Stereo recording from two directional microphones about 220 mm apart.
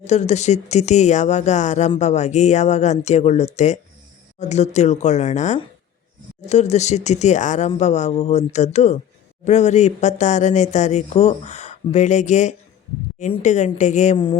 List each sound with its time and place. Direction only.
0.0 s speech: 30° left (ahead or behind)